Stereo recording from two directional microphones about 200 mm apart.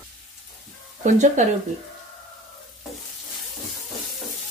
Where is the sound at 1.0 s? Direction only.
35° right (ahead or behind).